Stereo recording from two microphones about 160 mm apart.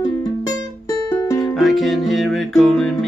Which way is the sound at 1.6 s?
Centre (ahead or behind).